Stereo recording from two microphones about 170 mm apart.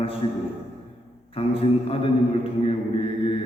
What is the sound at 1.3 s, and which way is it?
Mantra, 35° left (ahead or behind).